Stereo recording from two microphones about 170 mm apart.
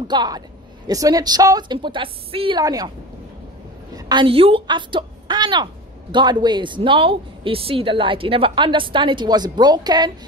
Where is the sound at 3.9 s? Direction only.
25° right (ahead or behind).